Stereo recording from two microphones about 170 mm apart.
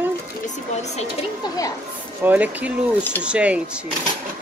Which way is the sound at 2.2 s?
10° right (ahead or behind).